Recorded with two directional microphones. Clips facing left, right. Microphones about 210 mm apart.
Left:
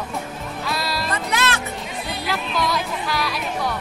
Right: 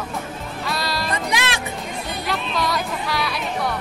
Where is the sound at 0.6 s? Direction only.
Centre (ahead or behind).